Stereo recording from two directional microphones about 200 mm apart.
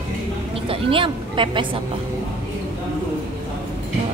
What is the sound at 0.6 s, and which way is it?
Speech, 25° right (ahead or behind).